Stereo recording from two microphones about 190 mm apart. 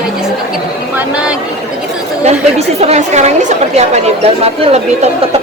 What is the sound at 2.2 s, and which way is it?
A woman's voice, 35° right (ahead or behind).